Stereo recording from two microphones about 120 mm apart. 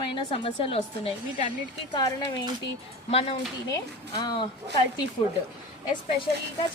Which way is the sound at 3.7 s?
35° left (ahead or behind).